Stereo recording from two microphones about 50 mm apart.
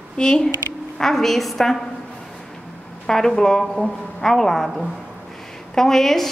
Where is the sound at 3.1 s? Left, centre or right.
Centre.